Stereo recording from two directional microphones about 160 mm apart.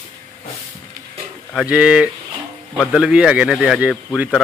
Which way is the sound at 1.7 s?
5° right (ahead or behind).